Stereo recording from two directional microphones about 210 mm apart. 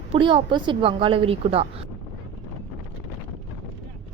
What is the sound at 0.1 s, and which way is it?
A woman's voice, 25° right (ahead or behind).